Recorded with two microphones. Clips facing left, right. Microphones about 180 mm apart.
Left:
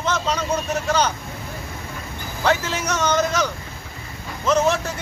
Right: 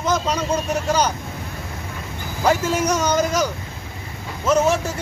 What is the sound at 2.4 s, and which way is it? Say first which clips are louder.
Speech: right 3 dB; 10° right (ahead or behind).